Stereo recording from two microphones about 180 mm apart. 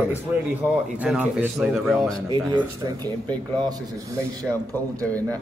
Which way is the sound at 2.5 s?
25° right (ahead or behind).